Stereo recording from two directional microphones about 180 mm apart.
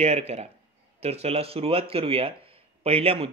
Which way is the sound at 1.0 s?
35° right (ahead or behind).